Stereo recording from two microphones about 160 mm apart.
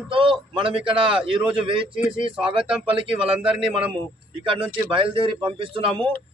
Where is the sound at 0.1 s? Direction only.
35° right (ahead or behind).